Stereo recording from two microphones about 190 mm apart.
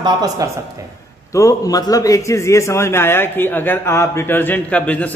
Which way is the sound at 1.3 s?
20° left (ahead or behind).